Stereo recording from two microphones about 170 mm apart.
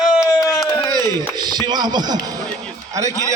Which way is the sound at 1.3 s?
25° right (ahead or behind).